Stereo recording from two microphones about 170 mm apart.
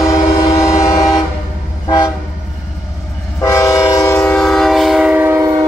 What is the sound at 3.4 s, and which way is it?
Train, 15° left (ahead or behind).